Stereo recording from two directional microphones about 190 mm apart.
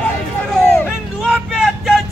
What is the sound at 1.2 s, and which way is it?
Vehicle, 5° right (ahead or behind).